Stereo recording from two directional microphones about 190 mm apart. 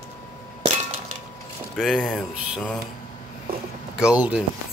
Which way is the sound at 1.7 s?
Centre (ahead or behind).